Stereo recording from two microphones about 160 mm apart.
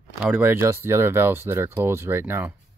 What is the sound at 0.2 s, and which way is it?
Speech, 10° right (ahead or behind).